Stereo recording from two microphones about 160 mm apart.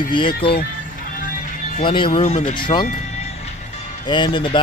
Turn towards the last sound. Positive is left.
turn(degrees=30)  # may be behind; listen again after turning